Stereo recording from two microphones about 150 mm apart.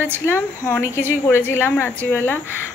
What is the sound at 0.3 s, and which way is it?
A woman's voice, 15° left (ahead or behind).